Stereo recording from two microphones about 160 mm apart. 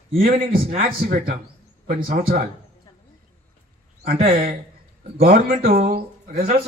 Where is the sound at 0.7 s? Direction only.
40° right (ahead or behind).